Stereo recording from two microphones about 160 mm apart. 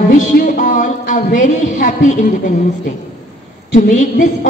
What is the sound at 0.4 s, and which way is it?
A woman's voice, 55° left (ahead or behind).